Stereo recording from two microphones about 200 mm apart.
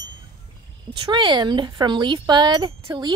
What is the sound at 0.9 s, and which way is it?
Speech, 25° right (ahead or behind).